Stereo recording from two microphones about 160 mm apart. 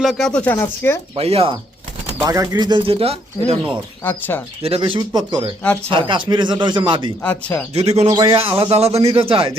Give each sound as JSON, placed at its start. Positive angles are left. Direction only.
{"t": 0.0, "sound": "speech", "side_deg": 0}
{"t": 1.1, "sound": "speech", "side_deg": -35}
{"t": 2.2, "sound": "speech", "side_deg": -20}
{"t": 4.0, "sound": "speech", "side_deg": 15}
{"t": 4.6, "sound": "speech", "side_deg": -35}
{"t": 7.2, "sound": "speech", "side_deg": 5}
{"t": 7.7, "sound": "speech", "side_deg": -40}
{"t": 8.1, "sound": "speech", "side_deg": -25}
{"t": 8.5, "sound": "speech", "side_deg": -40}